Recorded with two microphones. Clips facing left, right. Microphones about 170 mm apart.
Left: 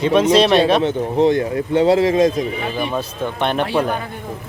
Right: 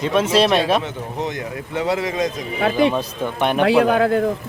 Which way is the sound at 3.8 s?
90° right.